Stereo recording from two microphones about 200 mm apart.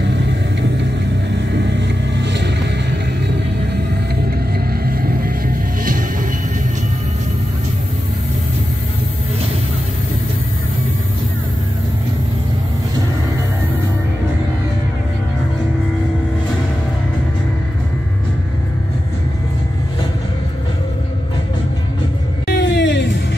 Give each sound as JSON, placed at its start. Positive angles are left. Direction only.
{"t": 2.1, "sound": "vehicle", "side_deg": -60}
{"t": 4.8, "sound": "music", "side_deg": -50}
{"t": 22.5, "sound": "music", "side_deg": 60}